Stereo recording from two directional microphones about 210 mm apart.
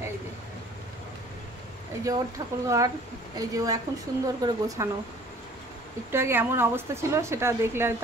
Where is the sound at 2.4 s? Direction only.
15° right (ahead or behind).